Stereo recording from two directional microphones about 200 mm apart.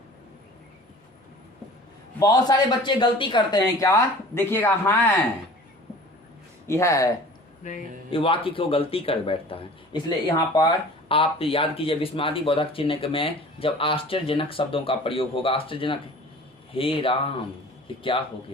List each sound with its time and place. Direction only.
2.1 s speech: 20° left (ahead or behind)
6.7 s speech: 15° left (ahead or behind)
7.6 s speech: 40° left (ahead or behind)
8.2 s speech: 25° left (ahead or behind)